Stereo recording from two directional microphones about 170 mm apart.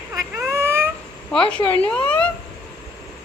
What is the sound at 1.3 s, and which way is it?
A woman's voice, 5° left (ahead or behind).